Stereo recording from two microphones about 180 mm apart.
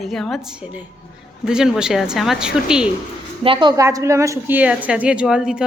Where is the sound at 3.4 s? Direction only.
25° right (ahead or behind).